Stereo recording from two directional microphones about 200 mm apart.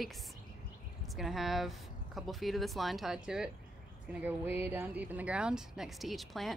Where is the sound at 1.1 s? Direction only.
Centre (ahead or behind).